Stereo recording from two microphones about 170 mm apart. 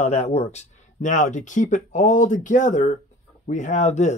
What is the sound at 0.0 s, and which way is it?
Speech, 40° left (ahead or behind).